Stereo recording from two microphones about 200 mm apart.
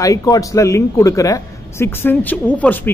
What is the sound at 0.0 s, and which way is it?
A man's voice, 15° left (ahead or behind).